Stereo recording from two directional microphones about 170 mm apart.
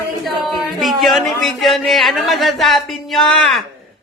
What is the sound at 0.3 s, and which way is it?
Speech, centre (ahead or behind).